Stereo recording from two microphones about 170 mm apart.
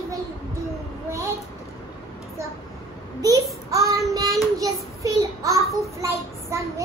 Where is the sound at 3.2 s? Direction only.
20° right (ahead or behind).